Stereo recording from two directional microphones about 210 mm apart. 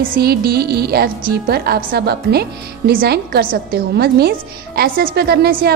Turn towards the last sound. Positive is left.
turn(degrees=-50)  # may be behind; listen again after turning